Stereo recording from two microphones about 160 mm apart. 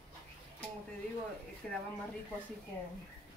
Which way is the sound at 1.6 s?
5° left (ahead or behind).